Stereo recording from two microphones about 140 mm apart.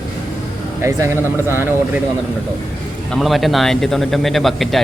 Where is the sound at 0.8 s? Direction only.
20° right (ahead or behind).